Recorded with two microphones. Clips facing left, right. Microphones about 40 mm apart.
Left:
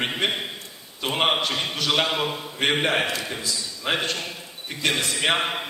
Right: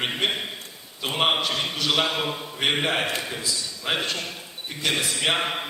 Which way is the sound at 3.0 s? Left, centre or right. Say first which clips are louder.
Left 1 dB; right.